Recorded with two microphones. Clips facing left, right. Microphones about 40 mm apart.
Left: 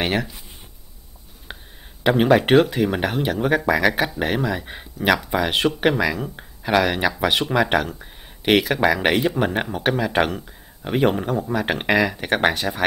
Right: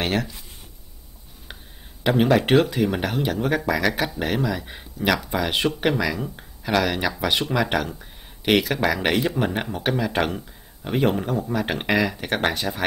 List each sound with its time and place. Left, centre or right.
0.0 s speech: centre
1.5 s a sound: centre
2.0 s speech: centre